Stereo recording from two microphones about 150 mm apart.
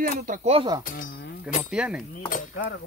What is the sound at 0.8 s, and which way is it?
Chink, 65° left (ahead or behind).